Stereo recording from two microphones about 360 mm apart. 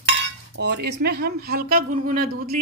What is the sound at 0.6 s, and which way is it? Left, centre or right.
Speech, right.